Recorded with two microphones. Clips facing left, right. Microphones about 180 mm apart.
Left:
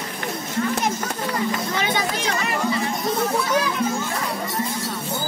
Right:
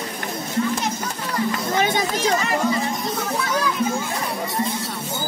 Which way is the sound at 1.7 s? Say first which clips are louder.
Right 3 dB; 45° right (ahead or behind).